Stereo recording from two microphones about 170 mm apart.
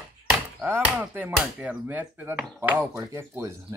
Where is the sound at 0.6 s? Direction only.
10° right (ahead or behind).